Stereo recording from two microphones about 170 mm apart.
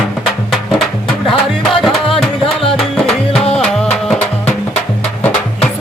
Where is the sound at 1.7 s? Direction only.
Centre (ahead or behind).